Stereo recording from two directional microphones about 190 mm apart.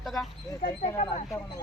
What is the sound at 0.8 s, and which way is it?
Speech, 25° left (ahead or behind).